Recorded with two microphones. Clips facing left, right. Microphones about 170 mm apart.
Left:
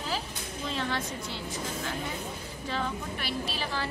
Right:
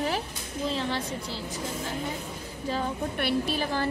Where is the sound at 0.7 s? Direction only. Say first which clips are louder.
Right 1 dB; 30° right (ahead or behind).